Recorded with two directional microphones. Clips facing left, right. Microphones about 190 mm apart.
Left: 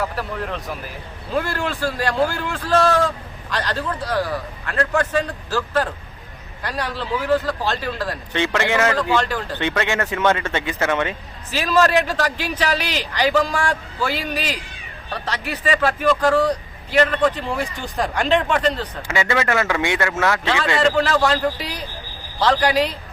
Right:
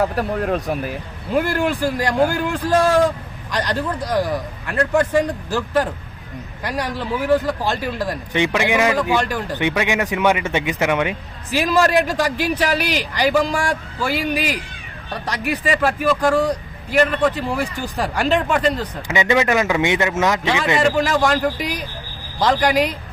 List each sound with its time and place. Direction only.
0.0 s speech: 45° right (ahead or behind)
1.3 s speech: 15° right (ahead or behind)